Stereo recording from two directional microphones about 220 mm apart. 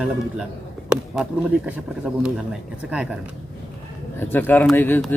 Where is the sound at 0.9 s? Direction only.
5° right (ahead or behind).